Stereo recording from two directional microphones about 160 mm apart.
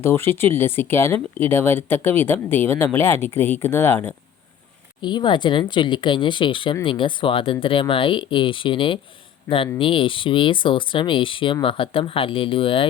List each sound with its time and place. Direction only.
0.0 s speech: 15° left (ahead or behind)
5.0 s speech: 30° left (ahead or behind)